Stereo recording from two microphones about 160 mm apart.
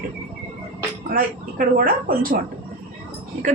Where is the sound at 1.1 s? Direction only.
65° right (ahead or behind).